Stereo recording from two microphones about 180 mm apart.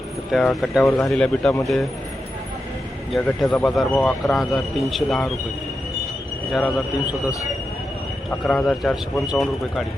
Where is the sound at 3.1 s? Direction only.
Centre (ahead or behind).